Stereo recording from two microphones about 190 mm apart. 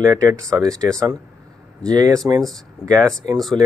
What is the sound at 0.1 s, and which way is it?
Speech, 15° right (ahead or behind).